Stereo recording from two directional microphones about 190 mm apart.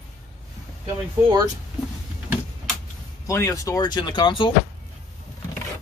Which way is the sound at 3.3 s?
15° left (ahead or behind).